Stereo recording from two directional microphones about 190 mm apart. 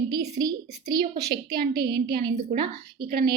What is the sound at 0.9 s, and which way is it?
A woman's voice, 55° right (ahead or behind).